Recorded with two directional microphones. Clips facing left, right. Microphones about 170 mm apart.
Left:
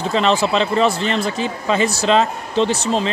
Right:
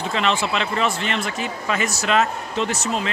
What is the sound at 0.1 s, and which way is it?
Speech, 35° left (ahead or behind).